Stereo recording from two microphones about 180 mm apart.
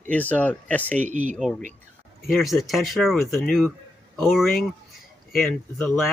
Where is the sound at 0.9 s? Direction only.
45° right (ahead or behind).